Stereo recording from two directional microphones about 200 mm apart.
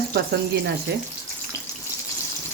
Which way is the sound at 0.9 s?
55° right (ahead or behind).